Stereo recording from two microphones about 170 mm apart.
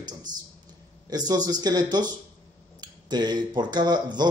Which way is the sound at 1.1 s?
25° right (ahead or behind).